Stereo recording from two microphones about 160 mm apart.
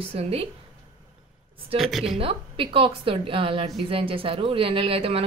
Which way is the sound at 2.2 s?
35° right (ahead or behind).